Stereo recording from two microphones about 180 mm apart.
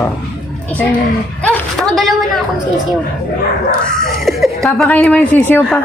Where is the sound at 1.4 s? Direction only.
5° left (ahead or behind).